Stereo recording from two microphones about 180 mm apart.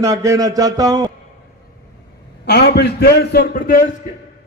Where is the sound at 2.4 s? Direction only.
70° left (ahead or behind).